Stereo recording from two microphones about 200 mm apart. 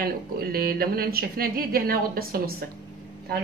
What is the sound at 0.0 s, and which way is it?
A woman's voice, 50° right (ahead or behind).